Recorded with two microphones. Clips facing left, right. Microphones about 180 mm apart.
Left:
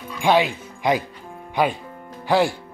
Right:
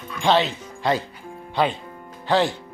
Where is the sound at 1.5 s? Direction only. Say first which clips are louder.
Left 1 dB; 10° left (ahead or behind).